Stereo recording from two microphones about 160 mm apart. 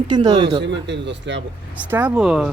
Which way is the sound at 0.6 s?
90° right.